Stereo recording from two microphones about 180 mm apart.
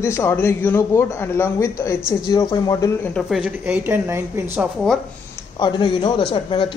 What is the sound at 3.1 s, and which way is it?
A woman's voice, centre (ahead or behind).